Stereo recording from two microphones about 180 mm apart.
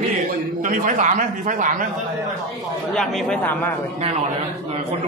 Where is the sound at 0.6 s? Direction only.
45° right (ahead or behind).